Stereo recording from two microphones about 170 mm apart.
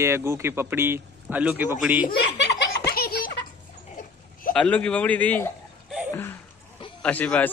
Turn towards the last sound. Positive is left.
turn(degrees=10)  # may be behind; listen again after turning